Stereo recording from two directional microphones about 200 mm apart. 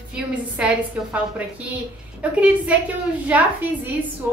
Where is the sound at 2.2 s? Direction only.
5° right (ahead or behind).